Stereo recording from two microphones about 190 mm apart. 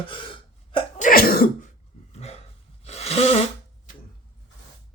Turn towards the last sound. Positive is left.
turn(degrees=35)  # may be behind; listen again after turning